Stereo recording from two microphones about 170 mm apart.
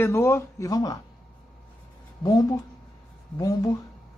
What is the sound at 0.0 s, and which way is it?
Speech, 15° left (ahead or behind).